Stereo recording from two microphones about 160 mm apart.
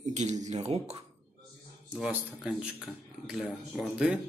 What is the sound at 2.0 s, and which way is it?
Speech, 5° right (ahead or behind).